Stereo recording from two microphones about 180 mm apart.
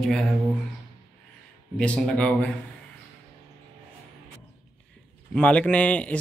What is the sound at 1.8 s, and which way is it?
Speech, 5° left (ahead or behind).